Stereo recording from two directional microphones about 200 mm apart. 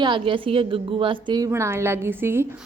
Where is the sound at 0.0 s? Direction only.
25° right (ahead or behind).